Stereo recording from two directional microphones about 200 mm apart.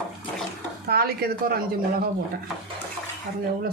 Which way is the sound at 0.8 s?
50° right (ahead or behind).